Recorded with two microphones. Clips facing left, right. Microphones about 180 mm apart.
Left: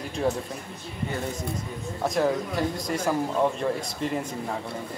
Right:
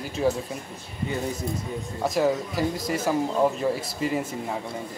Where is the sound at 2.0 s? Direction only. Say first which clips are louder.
Right 1 dB; centre (ahead or behind).